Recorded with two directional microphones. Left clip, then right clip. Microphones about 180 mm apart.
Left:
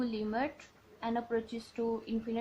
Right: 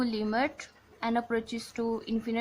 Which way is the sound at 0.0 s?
30° right (ahead or behind).